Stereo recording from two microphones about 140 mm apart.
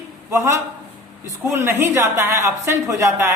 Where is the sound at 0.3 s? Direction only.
20° right (ahead or behind).